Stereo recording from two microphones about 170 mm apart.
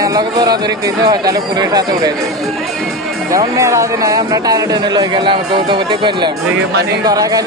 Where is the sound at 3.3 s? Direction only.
20° right (ahead or behind).